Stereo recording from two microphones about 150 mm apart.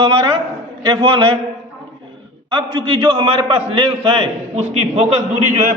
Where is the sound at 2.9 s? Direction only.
35° right (ahead or behind).